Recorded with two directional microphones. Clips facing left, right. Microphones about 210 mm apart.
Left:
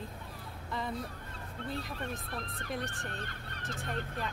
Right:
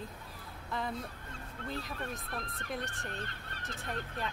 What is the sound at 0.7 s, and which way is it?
Speech, centre (ahead or behind).